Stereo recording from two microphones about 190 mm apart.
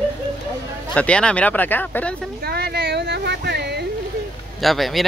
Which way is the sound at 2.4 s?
55° right (ahead or behind).